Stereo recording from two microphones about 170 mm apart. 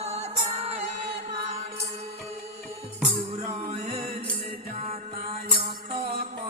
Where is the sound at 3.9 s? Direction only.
35° right (ahead or behind).